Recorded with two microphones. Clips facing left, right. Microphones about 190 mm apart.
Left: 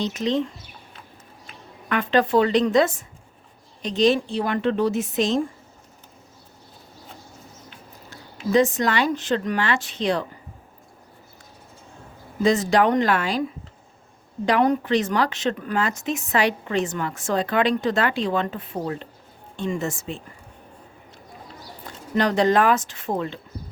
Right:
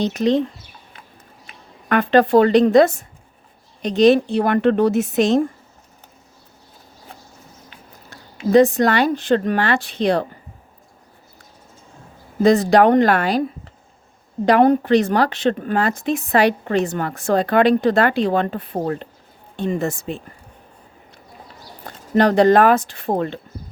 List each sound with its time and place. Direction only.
0.0 s a woman's voice: 60° right (ahead or behind)
1.9 s a woman's voice: 55° right (ahead or behind)
8.1 s a woman's voice: 60° right (ahead or behind)
12.4 s a woman's voice: 60° right (ahead or behind)
14.4 s a woman's voice: 55° right (ahead or behind)
21.8 s speech: 55° right (ahead or behind)